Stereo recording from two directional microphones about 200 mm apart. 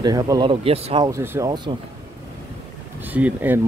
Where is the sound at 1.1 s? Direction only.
15° right (ahead or behind).